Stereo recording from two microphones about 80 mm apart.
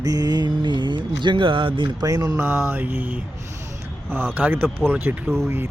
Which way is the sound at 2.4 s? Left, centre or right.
Right.